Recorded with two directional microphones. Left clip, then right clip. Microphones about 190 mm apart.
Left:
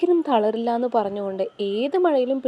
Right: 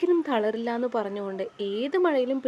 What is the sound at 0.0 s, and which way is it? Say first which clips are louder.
A woman's voice: left 5 dB; 10° left (ahead or behind).